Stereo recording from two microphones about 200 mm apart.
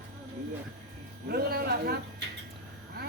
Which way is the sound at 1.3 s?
50° right (ahead or behind).